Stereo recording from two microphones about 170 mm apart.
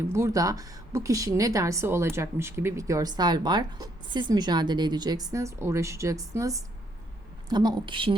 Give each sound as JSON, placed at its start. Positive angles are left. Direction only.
{"t": 0.1, "sound": "a woman's voice", "side_deg": -15}